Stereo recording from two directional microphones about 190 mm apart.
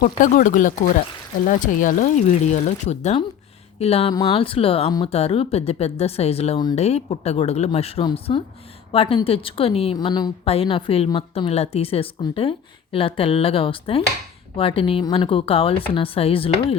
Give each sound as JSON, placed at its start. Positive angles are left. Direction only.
{"t": 0.2, "sound": "a woman's voice", "side_deg": 45}